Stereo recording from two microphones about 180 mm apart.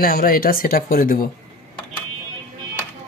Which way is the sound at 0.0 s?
55° left (ahead or behind).